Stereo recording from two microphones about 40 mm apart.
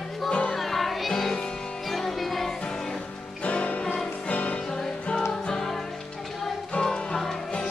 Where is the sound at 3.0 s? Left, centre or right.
Left.